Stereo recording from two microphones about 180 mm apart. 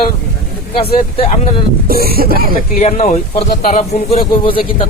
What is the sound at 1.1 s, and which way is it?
Speech, 35° left (ahead or behind).